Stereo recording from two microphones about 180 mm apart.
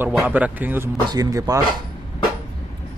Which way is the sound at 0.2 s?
10° right (ahead or behind).